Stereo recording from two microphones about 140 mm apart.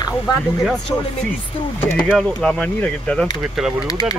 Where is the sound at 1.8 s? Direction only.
10° left (ahead or behind).